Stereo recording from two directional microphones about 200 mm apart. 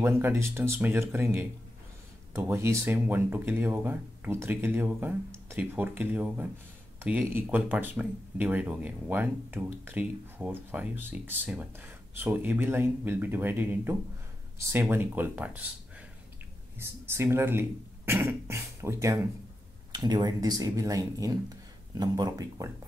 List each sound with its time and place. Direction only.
0.0 s speech: 15° right (ahead or behind)
16.8 s speech: 10° right (ahead or behind)